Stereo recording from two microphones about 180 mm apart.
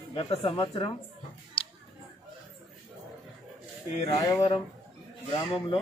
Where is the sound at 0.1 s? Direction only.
30° left (ahead or behind).